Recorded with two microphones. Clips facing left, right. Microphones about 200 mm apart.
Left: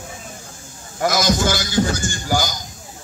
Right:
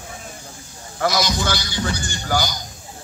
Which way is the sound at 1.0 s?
50° left (ahead or behind).